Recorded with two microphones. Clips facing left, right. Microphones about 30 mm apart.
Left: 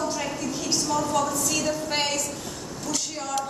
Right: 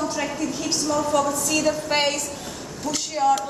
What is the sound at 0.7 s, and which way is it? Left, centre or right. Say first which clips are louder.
A woman's voice: right 2 dB; centre.